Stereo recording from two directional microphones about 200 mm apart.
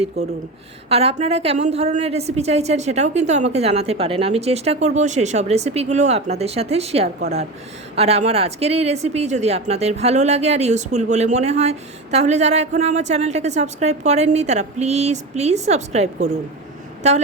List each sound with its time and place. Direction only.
0.2 s a woman's voice: 35° right (ahead or behind)